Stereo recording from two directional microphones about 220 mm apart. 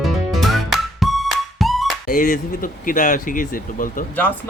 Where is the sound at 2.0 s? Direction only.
40° left (ahead or behind).